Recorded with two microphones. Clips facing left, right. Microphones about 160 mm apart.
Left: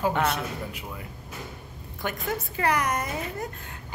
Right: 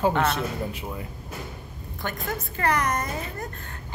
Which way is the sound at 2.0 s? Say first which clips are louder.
Left 1 dB; 10° left (ahead or behind).